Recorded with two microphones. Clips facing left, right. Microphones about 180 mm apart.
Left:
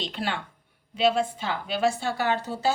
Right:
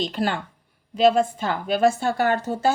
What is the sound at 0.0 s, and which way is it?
A woman's voice, 45° right (ahead or behind).